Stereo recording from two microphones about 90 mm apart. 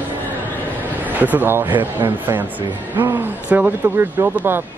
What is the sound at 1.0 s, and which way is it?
Speech, 20° right (ahead or behind).